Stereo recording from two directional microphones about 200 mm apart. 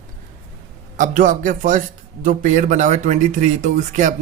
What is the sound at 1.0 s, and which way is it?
Speech, 40° right (ahead or behind).